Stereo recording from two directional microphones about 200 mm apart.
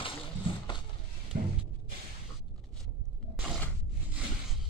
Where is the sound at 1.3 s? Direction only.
50° right (ahead or behind).